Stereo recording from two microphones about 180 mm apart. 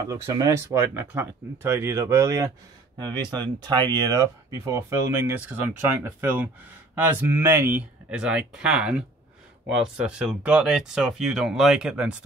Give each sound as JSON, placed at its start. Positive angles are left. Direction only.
{"t": 0.0, "sound": "speech", "side_deg": -20}
{"t": 3.5, "sound": "speech", "side_deg": -25}